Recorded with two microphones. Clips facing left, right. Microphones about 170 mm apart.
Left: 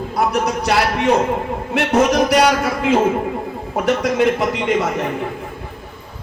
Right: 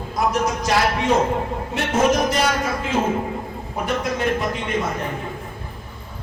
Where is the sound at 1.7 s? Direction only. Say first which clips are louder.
Left 4 dB; 75° left (ahead or behind).